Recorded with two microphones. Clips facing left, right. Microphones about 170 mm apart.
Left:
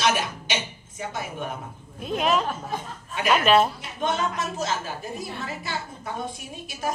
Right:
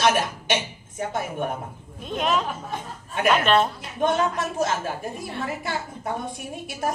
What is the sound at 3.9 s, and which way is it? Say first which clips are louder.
A woman's voice: right 4 dB; 55° right (ahead or behind).